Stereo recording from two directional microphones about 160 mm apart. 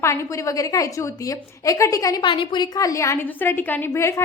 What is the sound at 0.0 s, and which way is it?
A woman's voice, 20° left (ahead or behind).